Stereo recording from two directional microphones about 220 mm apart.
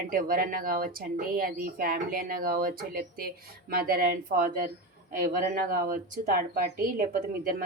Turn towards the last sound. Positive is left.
turn(degrees=-40)  # may be behind; listen again after turning